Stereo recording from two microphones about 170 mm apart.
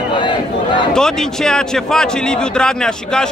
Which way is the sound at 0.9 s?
5° left (ahead or behind).